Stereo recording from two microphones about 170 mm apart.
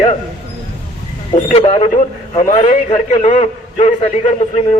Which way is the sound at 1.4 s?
40° left (ahead or behind).